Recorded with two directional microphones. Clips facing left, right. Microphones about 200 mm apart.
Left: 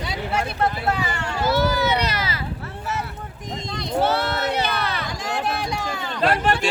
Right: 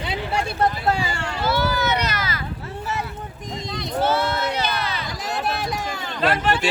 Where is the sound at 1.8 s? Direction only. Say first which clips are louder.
Left 1 dB; 30° left (ahead or behind).